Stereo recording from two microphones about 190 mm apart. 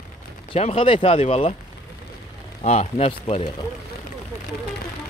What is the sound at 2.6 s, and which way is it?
Speech, 35° left (ahead or behind).